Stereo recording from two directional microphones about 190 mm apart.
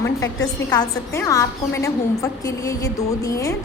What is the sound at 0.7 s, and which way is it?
A woman's voice, 15° left (ahead or behind).